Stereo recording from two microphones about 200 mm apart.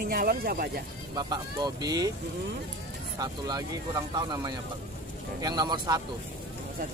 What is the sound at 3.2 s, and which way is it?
Speech, 20° right (ahead or behind).